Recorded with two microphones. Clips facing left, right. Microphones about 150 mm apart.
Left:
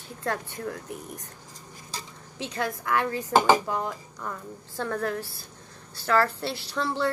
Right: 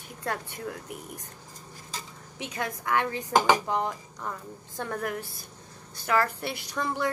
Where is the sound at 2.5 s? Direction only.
20° right (ahead or behind).